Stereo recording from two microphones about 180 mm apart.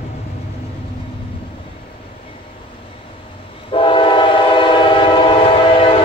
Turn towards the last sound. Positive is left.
turn(degrees=30)  # may be behind; listen again after turning